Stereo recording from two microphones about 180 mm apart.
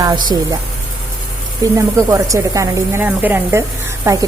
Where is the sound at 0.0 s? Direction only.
20° right (ahead or behind).